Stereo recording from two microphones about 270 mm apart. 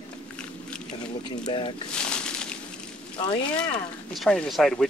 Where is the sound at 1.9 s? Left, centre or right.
Centre.